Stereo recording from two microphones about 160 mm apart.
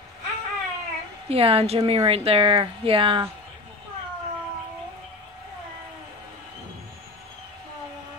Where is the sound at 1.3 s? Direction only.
35° right (ahead or behind).